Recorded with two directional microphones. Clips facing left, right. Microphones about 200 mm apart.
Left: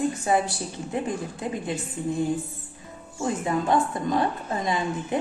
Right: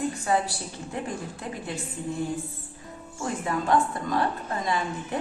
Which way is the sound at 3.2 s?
20° left (ahead or behind).